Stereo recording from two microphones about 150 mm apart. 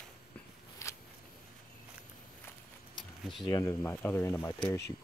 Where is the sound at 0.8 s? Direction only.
20° left (ahead or behind).